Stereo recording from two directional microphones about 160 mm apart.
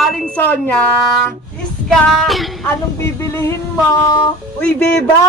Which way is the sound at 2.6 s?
15° left (ahead or behind).